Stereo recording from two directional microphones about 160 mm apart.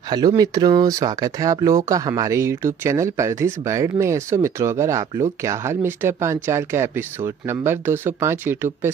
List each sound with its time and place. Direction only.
0.1 s speech: 25° right (ahead or behind)